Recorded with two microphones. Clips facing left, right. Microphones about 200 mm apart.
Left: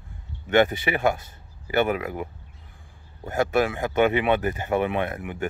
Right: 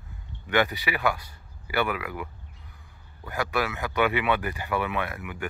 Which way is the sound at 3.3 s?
45° left (ahead or behind).